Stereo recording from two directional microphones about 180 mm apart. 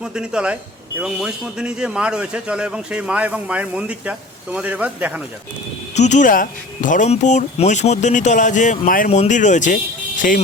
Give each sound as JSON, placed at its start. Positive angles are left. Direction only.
{"t": 0.0, "sound": "a man's voice", "side_deg": -5}
{"t": 6.0, "sound": "speech", "side_deg": 40}